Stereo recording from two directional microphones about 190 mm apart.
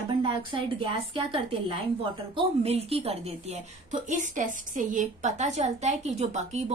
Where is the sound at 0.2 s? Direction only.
25° right (ahead or behind).